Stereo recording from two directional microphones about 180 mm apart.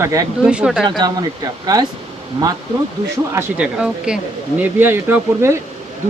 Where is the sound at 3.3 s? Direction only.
5° right (ahead or behind).